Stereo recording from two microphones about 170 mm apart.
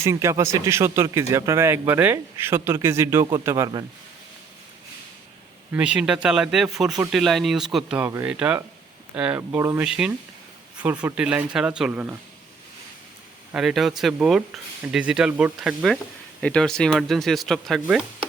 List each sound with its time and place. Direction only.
0.0 s speech: 15° right (ahead or behind)
5.7 s speech: 5° right (ahead or behind)
9.5 s speech: 20° right (ahead or behind)
9.8 s speech: 5° right (ahead or behind)
13.5 s speech: centre (ahead or behind)